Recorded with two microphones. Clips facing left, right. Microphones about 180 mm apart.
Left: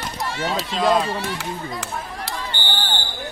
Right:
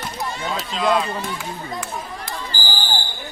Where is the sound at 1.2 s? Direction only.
75° left (ahead or behind).